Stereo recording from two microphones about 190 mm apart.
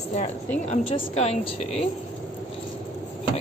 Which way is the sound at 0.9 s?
30° left (ahead or behind).